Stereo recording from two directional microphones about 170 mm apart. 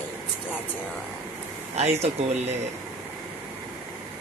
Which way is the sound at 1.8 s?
40° right (ahead or behind).